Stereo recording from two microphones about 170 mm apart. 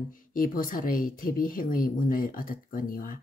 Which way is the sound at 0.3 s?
55° left (ahead or behind).